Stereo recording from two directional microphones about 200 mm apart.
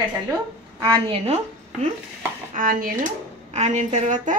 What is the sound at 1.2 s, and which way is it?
Speech, 35° right (ahead or behind).